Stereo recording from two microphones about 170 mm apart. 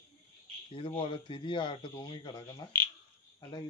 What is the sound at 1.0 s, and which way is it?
Speech, 30° left (ahead or behind).